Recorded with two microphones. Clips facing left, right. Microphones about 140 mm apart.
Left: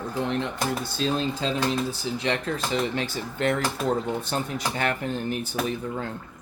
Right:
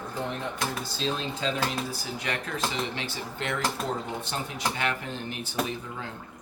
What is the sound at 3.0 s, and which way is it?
Speech, 45° left (ahead or behind).